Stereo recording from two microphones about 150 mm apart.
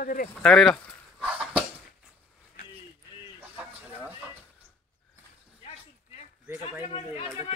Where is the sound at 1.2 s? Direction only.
10° right (ahead or behind).